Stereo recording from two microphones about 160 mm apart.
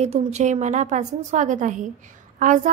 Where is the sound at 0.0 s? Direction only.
45° right (ahead or behind).